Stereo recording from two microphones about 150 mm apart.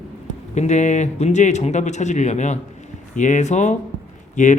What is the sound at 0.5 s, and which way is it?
A man's voice, 50° left (ahead or behind).